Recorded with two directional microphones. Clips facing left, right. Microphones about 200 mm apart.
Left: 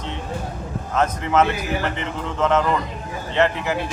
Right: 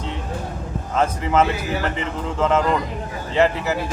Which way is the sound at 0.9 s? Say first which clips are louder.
Even; 10° right (ahead or behind).